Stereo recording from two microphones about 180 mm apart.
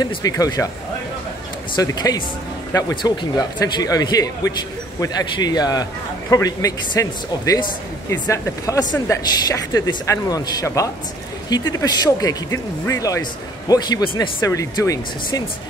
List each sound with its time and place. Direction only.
0.0 s speech: 20° left (ahead or behind)
1.8 s speech: 20° left (ahead or behind)